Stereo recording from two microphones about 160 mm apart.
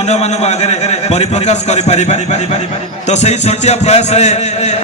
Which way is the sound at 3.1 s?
45° left (ahead or behind).